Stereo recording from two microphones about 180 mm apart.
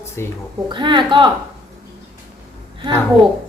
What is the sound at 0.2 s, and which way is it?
Speech, 15° left (ahead or behind).